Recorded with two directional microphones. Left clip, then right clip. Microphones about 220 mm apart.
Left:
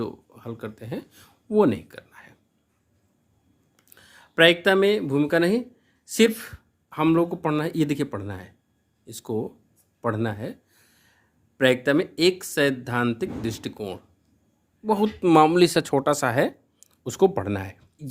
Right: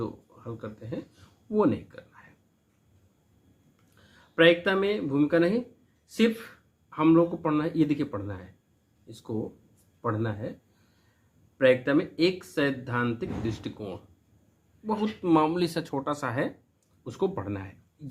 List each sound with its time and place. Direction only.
0.0 s speech: 50° left (ahead or behind)
4.1 s speech: 50° left (ahead or behind)
10.0 s speech: 50° left (ahead or behind)
11.5 s speech: 50° left (ahead or behind)